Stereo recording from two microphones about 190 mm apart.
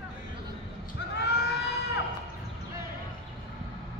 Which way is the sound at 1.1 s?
60° left (ahead or behind).